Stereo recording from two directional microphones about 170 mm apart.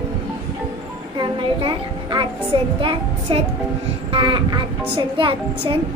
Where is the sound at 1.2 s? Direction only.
30° right (ahead or behind).